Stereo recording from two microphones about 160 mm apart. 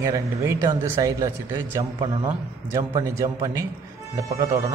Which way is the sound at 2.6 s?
20° right (ahead or behind).